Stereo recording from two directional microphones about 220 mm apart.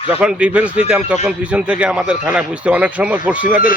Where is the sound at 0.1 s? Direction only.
5° right (ahead or behind).